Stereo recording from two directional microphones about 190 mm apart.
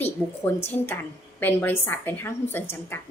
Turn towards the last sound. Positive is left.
turn(degrees=10)  # may be behind; listen again after turning